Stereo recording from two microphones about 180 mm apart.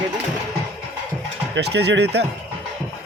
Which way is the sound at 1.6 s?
70° right (ahead or behind).